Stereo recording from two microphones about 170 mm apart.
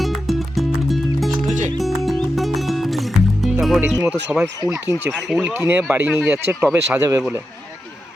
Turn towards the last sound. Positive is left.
turn(degrees=-15)  # may be behind; listen again after turning